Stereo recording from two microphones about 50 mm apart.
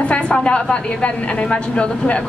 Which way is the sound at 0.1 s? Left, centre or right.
Left.